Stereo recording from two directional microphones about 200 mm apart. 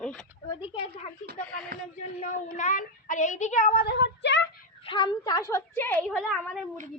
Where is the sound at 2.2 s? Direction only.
40° left (ahead or behind); by 4.4 s 60° left (ahead or behind).